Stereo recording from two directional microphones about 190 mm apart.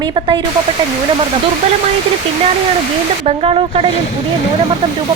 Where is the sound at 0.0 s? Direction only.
25° right (ahead or behind).